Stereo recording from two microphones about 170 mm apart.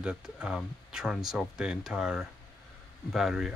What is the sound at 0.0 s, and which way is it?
Speech, 5° right (ahead or behind).